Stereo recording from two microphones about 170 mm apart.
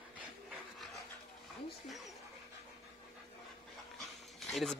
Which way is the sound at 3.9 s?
Centre (ahead or behind).